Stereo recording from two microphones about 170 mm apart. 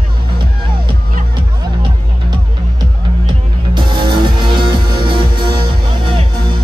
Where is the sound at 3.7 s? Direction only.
30° right (ahead or behind).